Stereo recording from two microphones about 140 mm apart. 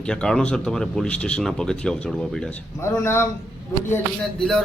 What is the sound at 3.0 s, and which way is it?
Speech, 20° left (ahead or behind).